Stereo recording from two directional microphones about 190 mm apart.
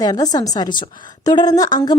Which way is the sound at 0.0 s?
20° left (ahead or behind).